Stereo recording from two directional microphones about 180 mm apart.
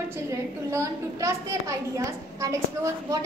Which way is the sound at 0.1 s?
15° right (ahead or behind).